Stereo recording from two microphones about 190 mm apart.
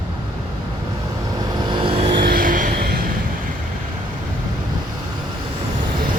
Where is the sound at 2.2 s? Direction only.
45° right (ahead or behind).